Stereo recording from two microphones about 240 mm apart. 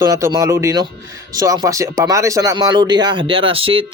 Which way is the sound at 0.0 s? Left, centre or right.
Centre.